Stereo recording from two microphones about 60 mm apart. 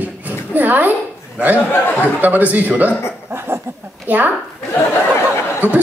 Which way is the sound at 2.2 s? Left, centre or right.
Right.